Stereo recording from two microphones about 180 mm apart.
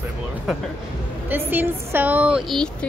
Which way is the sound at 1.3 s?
10° right (ahead or behind).